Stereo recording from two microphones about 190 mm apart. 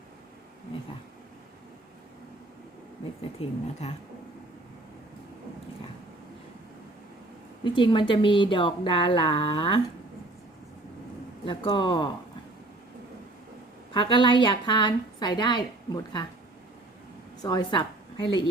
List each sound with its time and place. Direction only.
3.4 s speech: 30° left (ahead or behind)
7.6 s a woman's voice: 25° left (ahead or behind)
11.4 s a woman's voice: 25° left (ahead or behind)
13.9 s a woman's voice: 25° left (ahead or behind)
17.4 s a woman's voice: 20° left (ahead or behind)